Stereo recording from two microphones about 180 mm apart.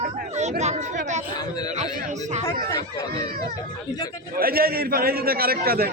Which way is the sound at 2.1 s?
40° right (ahead or behind).